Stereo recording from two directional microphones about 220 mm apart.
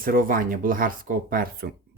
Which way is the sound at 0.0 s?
40° right (ahead or behind).